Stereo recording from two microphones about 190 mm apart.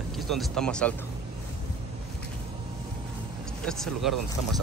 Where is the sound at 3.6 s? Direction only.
5° left (ahead or behind).